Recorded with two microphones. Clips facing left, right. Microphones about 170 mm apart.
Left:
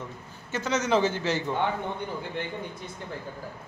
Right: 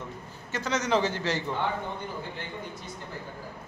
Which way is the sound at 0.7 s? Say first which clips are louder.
Left 2 dB; 5° left (ahead or behind).